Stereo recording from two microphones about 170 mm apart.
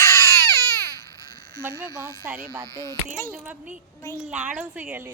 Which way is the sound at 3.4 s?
10° right (ahead or behind).